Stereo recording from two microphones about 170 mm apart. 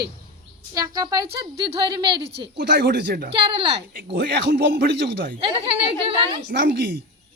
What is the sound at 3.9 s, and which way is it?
Speech, 70° right (ahead or behind).